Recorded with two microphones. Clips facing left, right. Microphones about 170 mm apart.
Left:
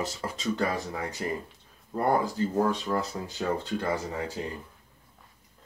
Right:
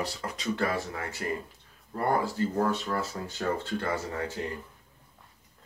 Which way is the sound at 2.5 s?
15° left (ahead or behind).